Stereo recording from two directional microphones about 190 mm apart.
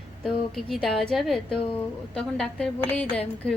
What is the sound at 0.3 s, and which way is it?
A woman's voice, centre (ahead or behind).